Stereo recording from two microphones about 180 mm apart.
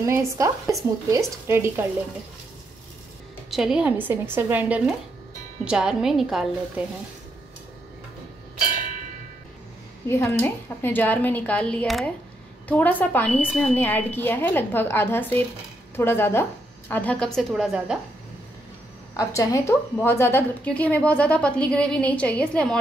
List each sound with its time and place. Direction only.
0.0 s speech: 15° right (ahead or behind)
3.4 s a woman's voice: centre (ahead or behind)
10.0 s a woman's voice: 15° left (ahead or behind); by 17.9 s centre (ahead or behind)
19.1 s a woman's voice: 20° left (ahead or behind)